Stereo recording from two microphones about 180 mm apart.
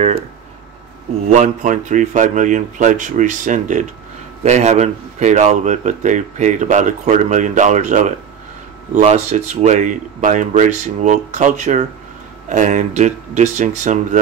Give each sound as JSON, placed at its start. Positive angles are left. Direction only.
{"t": 1.3, "sound": "speech", "side_deg": -45}